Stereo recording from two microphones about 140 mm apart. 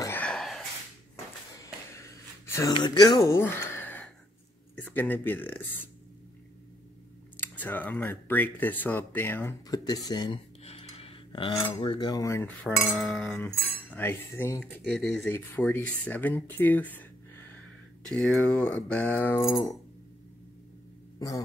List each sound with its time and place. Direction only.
0.0 s a sound: 15° left (ahead or behind)
0.3 s a sound: centre (ahead or behind)
2.4 s a sound: 20° left (ahead or behind)
2.7 s speech: 35° left (ahead or behind); by 5.9 s 15° left (ahead or behind)
7.3 s speech: 15° left (ahead or behind)
9.7 s cutlery: 25° left (ahead or behind)
10.6 s a sound: 45° left (ahead or behind)
11.8 s cutlery: 35° left (ahead or behind)
12.6 s speech: centre (ahead or behind); by 14.6 s 15° left (ahead or behind)
14.6 s speech: 5° left (ahead or behind)
15.2 s speech: 15° left (ahead or behind)
18.1 s speech: 5° left (ahead or behind)